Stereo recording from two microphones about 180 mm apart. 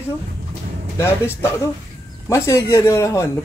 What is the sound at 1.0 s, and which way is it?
Speech, 15° left (ahead or behind).